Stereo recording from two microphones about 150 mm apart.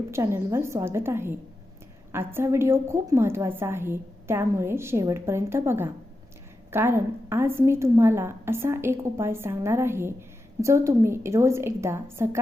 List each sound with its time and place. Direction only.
0.1 s a woman's voice: 20° right (ahead or behind)